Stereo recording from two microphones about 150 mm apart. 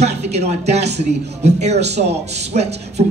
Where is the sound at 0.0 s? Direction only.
45° right (ahead or behind).